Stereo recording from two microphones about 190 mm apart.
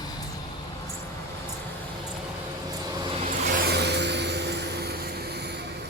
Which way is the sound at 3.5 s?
55° right (ahead or behind).